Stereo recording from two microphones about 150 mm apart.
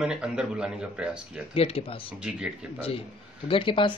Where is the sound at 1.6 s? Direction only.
40° left (ahead or behind).